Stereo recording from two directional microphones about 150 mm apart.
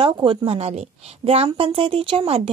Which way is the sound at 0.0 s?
35° right (ahead or behind).